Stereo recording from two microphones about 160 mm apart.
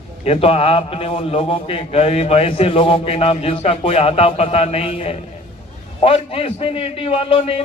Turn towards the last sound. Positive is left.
turn(degrees=35)  # may be behind; listen again after turning